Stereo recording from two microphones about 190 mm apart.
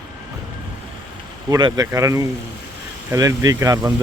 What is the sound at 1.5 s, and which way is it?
Speech, 20° right (ahead or behind).